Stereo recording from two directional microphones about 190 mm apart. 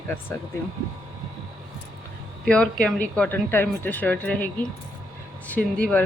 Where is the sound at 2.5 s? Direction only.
5° left (ahead or behind).